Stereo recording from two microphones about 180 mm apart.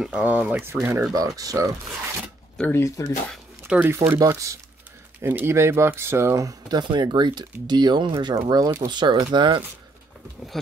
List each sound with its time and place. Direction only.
0.0 s speech: 5° right (ahead or behind)
2.5 s speech: 10° left (ahead or behind)
3.6 s speech: 10° right (ahead or behind); by 9.6 s 25° right (ahead or behind)